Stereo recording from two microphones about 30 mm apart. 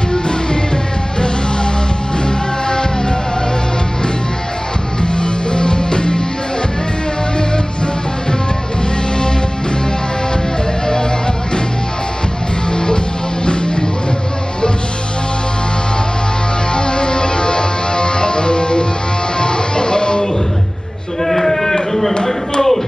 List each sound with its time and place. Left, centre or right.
2.2 s music: left
5.0 s music: left
7.3 s music: left
12.7 s music: left
16.7 s music: left
21.2 s a sound: centre